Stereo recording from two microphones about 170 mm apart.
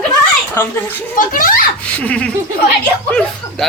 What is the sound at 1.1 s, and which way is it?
Speech, 55° left (ahead or behind).